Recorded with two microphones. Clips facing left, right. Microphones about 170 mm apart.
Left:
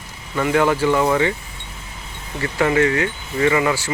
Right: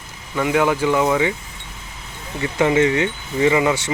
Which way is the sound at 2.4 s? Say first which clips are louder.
Right 1 dB; 20° right (ahead or behind).